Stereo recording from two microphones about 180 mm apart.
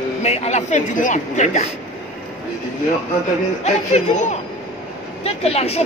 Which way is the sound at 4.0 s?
40° left (ahead or behind).